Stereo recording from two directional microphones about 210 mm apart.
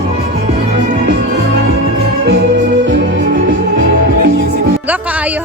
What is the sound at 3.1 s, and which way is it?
Music, 40° right (ahead or behind).